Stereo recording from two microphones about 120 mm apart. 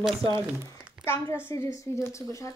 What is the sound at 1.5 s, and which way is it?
Speech, 25° left (ahead or behind).